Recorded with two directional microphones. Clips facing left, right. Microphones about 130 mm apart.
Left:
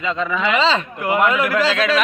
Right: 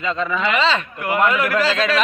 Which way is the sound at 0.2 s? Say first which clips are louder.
Even; 15° left (ahead or behind).